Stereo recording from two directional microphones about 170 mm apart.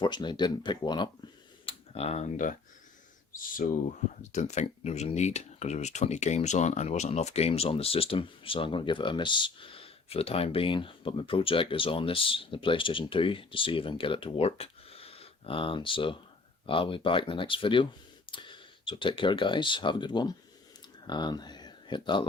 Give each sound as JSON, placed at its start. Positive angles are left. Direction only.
{"t": 0.0, "sound": "speech", "side_deg": 25}
{"t": 3.6, "sound": "speech", "side_deg": 55}